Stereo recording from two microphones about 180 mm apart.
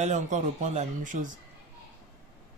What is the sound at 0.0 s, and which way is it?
Speech, 40° right (ahead or behind).